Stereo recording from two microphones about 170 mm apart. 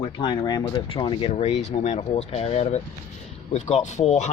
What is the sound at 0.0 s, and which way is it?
Speech, 25° left (ahead or behind).